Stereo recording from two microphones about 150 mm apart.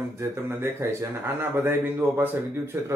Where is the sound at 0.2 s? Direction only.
15° right (ahead or behind).